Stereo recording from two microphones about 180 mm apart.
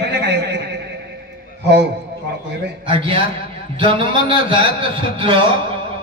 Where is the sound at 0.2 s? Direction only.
70° right (ahead or behind).